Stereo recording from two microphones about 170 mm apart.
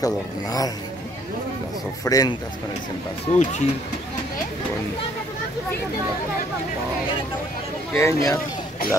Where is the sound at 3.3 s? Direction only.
40° left (ahead or behind).